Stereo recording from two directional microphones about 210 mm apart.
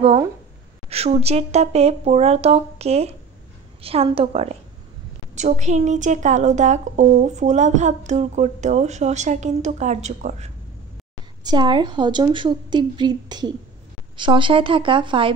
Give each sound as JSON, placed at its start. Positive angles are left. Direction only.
{"t": 0.8, "sound": "a woman's voice", "side_deg": -30}
{"t": 11.4, "sound": "speech", "side_deg": -20}